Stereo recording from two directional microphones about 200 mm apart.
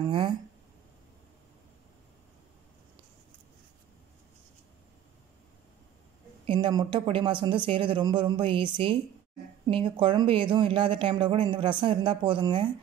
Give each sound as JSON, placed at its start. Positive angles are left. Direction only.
{"t": 6.4, "sound": "speech", "side_deg": -25}